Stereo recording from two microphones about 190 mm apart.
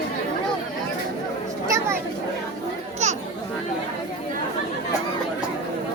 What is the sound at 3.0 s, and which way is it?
Chatter, 35° right (ahead or behind).